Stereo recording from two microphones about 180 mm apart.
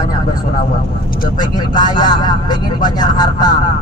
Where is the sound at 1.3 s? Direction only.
25° left (ahead or behind).